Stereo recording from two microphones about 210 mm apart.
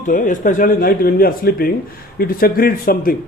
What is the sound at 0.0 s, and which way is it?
A woman's voice, 40° left (ahead or behind).